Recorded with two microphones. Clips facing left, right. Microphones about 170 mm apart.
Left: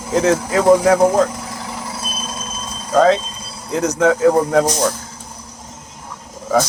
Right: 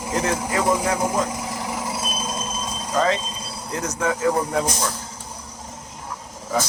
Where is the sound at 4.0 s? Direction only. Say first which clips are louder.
Left 8 dB; 80° left.